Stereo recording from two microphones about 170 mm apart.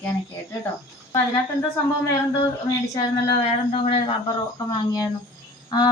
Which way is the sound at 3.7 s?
35° left (ahead or behind).